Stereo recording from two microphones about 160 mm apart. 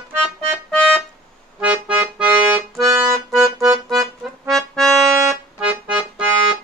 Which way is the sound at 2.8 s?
20° right (ahead or behind).